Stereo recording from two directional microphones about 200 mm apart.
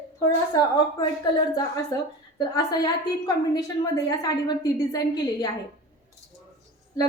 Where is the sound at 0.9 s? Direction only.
20° left (ahead or behind).